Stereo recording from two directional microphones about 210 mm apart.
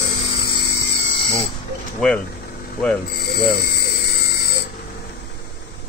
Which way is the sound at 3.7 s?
50° left (ahead or behind).